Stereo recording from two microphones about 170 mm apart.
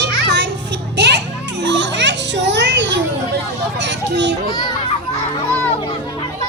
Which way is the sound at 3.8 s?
90° right.